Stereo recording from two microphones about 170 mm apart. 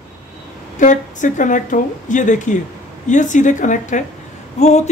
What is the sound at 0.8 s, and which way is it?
Speech, 45° left (ahead or behind).